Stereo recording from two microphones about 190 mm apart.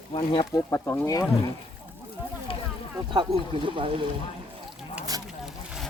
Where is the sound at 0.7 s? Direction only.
15° left (ahead or behind).